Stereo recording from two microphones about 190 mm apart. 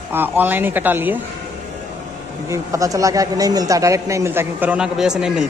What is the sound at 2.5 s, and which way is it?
Speech, 15° right (ahead or behind).